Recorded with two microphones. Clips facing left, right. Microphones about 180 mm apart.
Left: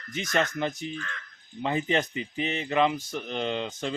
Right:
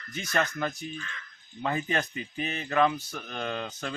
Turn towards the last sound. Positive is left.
turn(degrees=20)  # may be behind; listen again after turning